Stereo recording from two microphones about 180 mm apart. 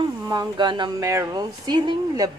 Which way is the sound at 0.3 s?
25° right (ahead or behind).